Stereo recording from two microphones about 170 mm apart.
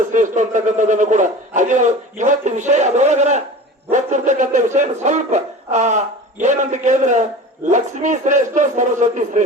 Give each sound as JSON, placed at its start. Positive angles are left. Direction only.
{"t": 0.1, "sound": "a man's voice", "side_deg": -45}
{"t": 3.8, "sound": "dog", "side_deg": -45}
{"t": 7.7, "sound": "a man's voice", "side_deg": -45}